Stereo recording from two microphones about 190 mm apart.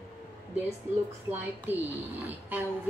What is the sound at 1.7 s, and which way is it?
Speech, 10° right (ahead or behind).